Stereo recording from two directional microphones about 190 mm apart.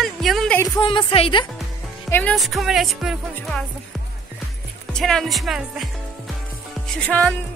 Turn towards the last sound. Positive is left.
turn(degrees=5)  # may be behind; listen again after turning